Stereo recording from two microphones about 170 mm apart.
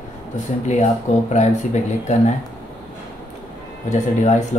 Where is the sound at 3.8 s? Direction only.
45° left (ahead or behind).